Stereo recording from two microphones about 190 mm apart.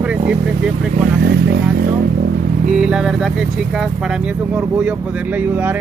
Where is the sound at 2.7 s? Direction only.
5° right (ahead or behind).